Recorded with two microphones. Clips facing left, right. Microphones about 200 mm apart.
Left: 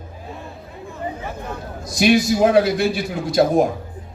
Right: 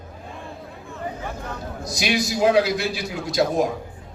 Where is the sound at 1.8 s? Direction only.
55° left (ahead or behind).